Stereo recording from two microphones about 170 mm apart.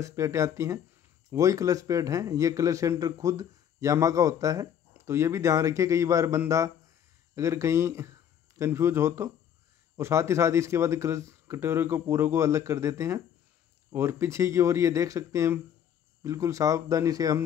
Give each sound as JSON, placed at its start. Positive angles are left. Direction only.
{"t": 0.0, "sound": "speech", "side_deg": -15}